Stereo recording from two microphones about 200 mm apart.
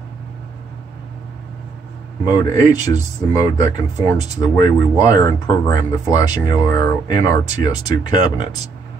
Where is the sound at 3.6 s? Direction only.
15° left (ahead or behind).